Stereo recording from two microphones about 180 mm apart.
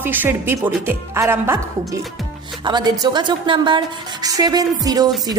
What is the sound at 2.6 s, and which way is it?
A woman's voice, 25° right (ahead or behind).